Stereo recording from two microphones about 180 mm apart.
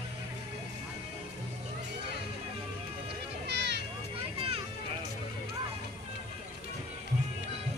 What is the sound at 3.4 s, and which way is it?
Music, 70° right (ahead or behind).